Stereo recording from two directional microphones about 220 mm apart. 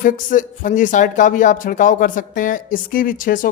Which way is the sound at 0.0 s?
35° left (ahead or behind).